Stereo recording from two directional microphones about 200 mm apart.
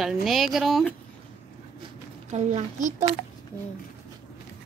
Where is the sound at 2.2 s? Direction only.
35° right (ahead or behind).